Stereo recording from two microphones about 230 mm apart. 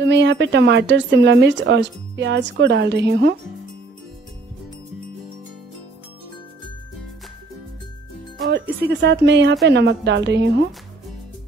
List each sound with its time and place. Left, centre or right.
0.0 s speech: right
8.5 s speech: right